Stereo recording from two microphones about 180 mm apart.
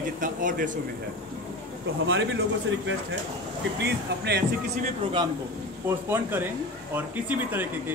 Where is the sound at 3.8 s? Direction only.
65° right (ahead or behind).